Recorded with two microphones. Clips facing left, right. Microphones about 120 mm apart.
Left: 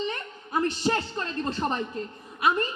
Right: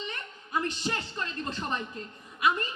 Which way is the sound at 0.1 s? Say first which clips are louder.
Left 3 dB; 35° left (ahead or behind).